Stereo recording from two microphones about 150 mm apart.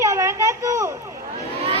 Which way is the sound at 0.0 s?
20° right (ahead or behind).